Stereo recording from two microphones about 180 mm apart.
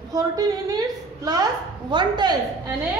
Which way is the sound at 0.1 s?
20° right (ahead or behind).